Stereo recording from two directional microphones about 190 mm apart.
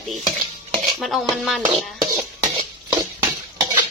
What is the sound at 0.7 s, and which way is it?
Dishes, 25° right (ahead or behind).